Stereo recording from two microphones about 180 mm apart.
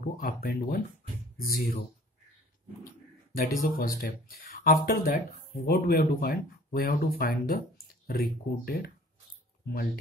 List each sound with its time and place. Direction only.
0.0 s speech: 55° left (ahead or behind)
3.3 s speech: 50° left (ahead or behind)